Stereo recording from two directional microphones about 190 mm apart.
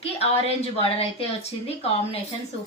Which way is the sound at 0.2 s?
30° left (ahead or behind).